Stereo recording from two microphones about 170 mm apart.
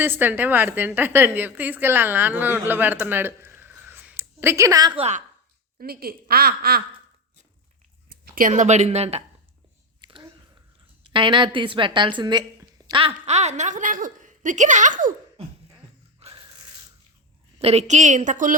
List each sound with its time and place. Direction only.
0.0 s a woman's voice: 10° right (ahead or behind)
4.9 s a woman's voice: 40° right (ahead or behind)
5.8 s speech: 65° right (ahead or behind)
8.1 s speech: 55° right (ahead or behind); by 9.2 s 40° right (ahead or behind)
10.0 s a sound: 30° right (ahead or behind)
11.0 s a woman's voice: 30° right (ahead or behind); by 15.1 s 50° right (ahead or behind)
16.2 s a sound: 25° right (ahead or behind)
17.6 s a woman's voice: 40° right (ahead or behind)